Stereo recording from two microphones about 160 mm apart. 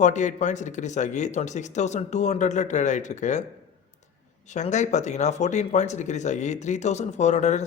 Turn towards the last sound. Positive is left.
turn(degrees=45)  # may be behind; listen again after turning